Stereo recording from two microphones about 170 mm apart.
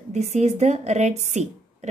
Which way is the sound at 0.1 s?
40° right (ahead or behind).